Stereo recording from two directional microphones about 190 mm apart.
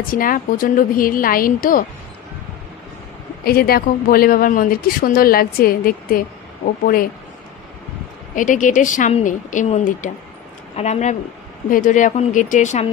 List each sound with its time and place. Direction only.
0.0 s speech: 50° left (ahead or behind)
3.4 s speech: 55° left (ahead or behind)
8.4 s speech: 45° left (ahead or behind)